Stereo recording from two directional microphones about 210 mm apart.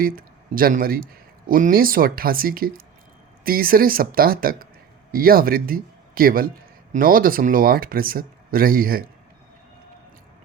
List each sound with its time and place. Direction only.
0.0 s speech: 45° right (ahead or behind)